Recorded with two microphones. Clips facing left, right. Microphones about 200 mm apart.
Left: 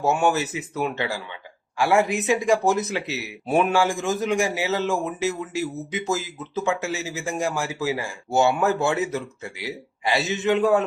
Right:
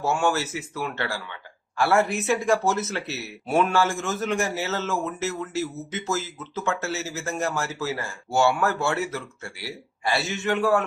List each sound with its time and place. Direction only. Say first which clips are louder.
0.0 s speech: left 3 dB; 20° left (ahead or behind)